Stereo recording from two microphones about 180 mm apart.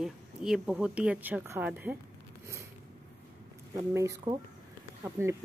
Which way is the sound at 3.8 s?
20° right (ahead or behind).